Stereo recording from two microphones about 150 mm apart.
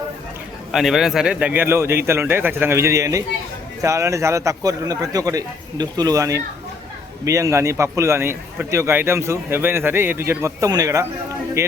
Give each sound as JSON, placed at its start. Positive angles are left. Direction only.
{"t": 0.7, "sound": "a man's voice", "side_deg": 0}